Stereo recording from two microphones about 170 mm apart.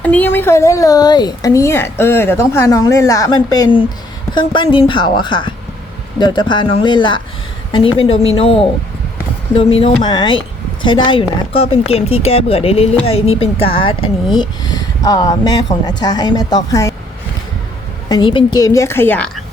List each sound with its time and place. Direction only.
0.0 s speech: 10° left (ahead or behind)
18.1 s speech: 30° left (ahead or behind); by 19.3 s 10° left (ahead or behind)